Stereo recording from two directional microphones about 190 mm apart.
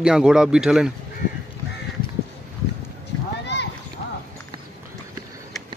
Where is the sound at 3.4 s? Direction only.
65° left (ahead or behind).